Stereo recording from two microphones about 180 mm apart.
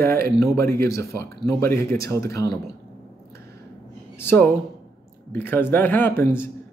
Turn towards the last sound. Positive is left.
turn(degrees=15)  # may be behind; listen again after turning